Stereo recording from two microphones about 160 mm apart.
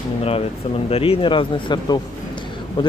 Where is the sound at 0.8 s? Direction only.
40° left (ahead or behind).